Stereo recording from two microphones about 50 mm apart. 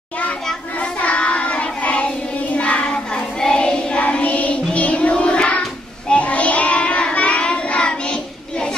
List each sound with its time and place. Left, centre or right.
0.7 s child singing: left